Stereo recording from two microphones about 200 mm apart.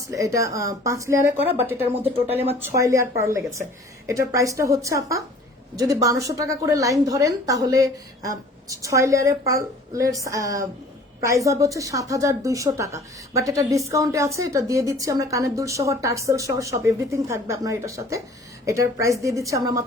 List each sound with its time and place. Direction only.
0.1 s a woman's voice: 15° right (ahead or behind)